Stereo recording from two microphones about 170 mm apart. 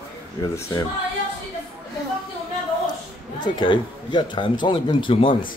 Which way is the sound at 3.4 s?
25° left (ahead or behind).